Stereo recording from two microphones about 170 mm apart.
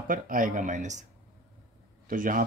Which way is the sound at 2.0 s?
50° right (ahead or behind).